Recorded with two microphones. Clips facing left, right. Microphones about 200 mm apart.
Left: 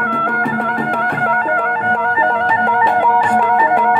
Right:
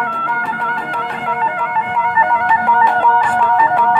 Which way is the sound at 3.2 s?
25° left (ahead or behind).